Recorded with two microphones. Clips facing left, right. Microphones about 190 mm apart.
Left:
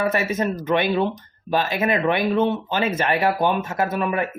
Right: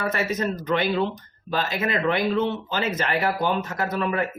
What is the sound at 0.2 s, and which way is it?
Speech, 25° left (ahead or behind).